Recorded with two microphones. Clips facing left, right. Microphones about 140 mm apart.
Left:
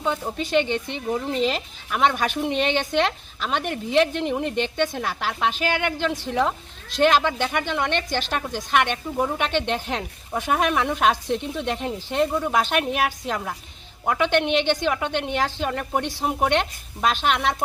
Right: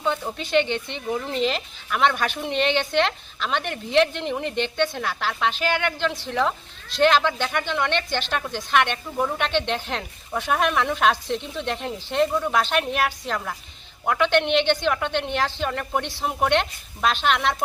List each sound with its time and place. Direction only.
0.0 s a woman's voice: 5° left (ahead or behind)